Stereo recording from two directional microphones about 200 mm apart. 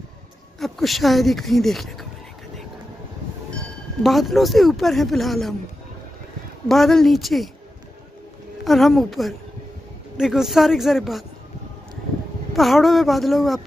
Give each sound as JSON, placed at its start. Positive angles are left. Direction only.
{"t": 0.6, "sound": "speech", "side_deg": 0}
{"t": 4.0, "sound": "speech", "side_deg": 0}
{"t": 6.7, "sound": "speech", "side_deg": 0}
{"t": 8.6, "sound": "speech", "side_deg": 0}
{"t": 12.5, "sound": "speech", "side_deg": 0}